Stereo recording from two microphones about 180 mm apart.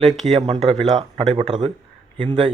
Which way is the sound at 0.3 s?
30° right (ahead or behind).